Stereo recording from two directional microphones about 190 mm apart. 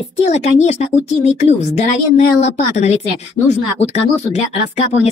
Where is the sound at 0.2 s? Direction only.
35° left (ahead or behind).